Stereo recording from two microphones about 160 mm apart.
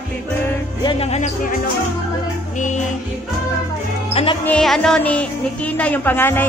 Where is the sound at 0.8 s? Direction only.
40° left (ahead or behind).